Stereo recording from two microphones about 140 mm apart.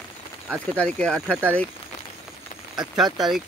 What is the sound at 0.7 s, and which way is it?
Speech, 10° left (ahead or behind).